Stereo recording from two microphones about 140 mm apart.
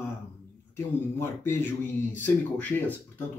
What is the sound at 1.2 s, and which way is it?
Speech, 15° left (ahead or behind).